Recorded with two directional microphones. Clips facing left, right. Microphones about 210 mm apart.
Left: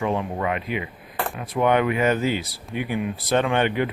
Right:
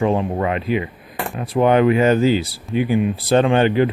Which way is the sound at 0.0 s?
30° right (ahead or behind).